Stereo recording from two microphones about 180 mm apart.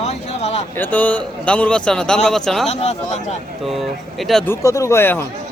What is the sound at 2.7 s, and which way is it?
Speech, 35° left (ahead or behind).